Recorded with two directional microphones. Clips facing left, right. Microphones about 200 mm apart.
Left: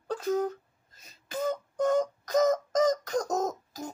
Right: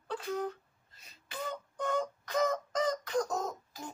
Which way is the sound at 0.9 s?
45° left (ahead or behind).